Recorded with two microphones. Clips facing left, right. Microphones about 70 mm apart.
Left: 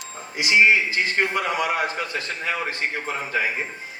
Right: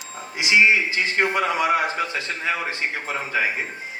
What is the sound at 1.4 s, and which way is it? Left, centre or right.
Speech, right.